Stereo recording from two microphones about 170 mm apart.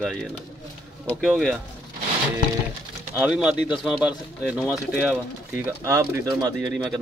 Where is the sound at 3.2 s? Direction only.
5° right (ahead or behind).